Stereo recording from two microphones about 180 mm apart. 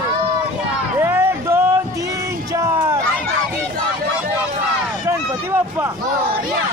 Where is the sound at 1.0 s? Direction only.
15° right (ahead or behind).